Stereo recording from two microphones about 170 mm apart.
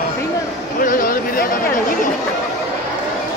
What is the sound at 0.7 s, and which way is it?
Speech, 55° left (ahead or behind).